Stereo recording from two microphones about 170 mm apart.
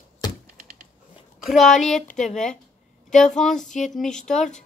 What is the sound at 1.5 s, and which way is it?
A man's voice, centre (ahead or behind).